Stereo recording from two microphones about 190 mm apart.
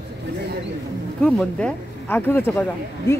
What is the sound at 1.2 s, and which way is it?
Speech, 5° left (ahead or behind).